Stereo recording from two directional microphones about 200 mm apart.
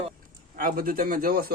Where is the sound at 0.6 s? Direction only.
45° right (ahead or behind).